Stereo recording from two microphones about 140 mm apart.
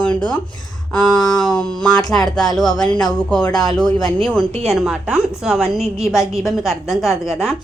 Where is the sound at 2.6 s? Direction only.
30° left (ahead or behind).